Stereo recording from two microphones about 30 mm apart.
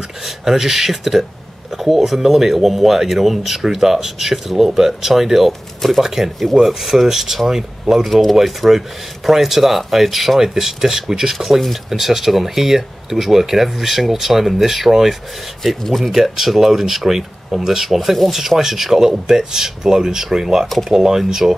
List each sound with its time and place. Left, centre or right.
0.2 s speech: centre
5.5 s speech: centre
5.9 s speech: centre
7.9 s speech: centre
11.3 s speech: centre
11.9 s speech: centre
18.6 s speech: centre
21.2 s speech: centre